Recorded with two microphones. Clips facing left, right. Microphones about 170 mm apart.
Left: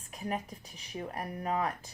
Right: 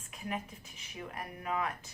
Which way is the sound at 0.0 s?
40° left (ahead or behind).